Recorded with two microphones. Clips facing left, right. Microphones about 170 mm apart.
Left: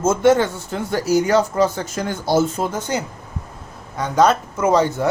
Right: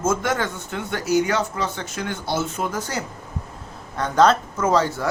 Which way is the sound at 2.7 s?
20° left (ahead or behind).